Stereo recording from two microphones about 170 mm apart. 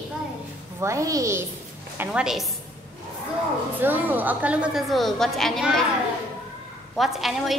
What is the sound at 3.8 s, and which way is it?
A woman's voice, 10° right (ahead or behind).